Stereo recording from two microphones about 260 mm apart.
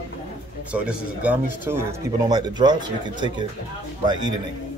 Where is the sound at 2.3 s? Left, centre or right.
Centre.